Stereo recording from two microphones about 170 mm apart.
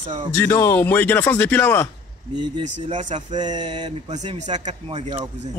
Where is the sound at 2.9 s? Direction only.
45° right (ahead or behind).